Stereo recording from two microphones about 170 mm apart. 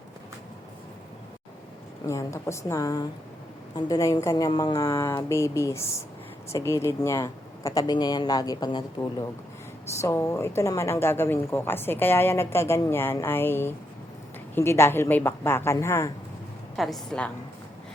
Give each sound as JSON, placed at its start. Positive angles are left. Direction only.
{"t": 2.0, "sound": "a woman's voice", "side_deg": 15}
{"t": 16.7, "sound": "a woman's voice", "side_deg": 0}